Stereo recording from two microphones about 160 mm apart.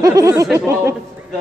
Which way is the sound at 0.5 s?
15° right (ahead or behind).